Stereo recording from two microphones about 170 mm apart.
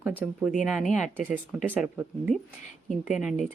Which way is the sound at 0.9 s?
45° left (ahead or behind).